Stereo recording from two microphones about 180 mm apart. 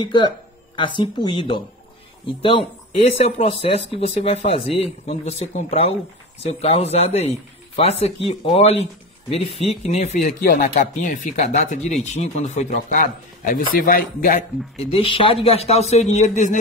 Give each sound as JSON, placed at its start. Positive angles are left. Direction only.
{"t": 0.0, "sound": "speech", "side_deg": 25}
{"t": 14.9, "sound": "speech", "side_deg": 30}